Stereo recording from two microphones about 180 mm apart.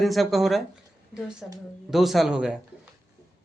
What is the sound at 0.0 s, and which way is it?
A woman's voice, centre (ahead or behind).